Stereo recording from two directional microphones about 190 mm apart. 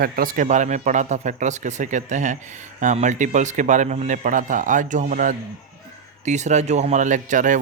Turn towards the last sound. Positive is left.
turn(degrees=-40)  # may be behind; listen again after turning